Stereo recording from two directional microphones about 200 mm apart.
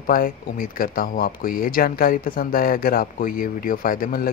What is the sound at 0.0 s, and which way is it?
Speech, 45° left (ahead or behind).